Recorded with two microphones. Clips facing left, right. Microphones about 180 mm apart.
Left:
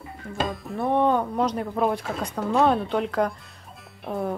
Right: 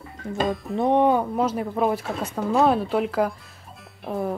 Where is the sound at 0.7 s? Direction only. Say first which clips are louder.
Right 2 dB; 15° right (ahead or behind); by 4.3 s centre (ahead or behind).